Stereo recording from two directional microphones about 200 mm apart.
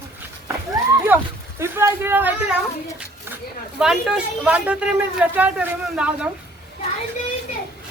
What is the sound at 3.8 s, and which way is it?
A man's voice, centre (ahead or behind).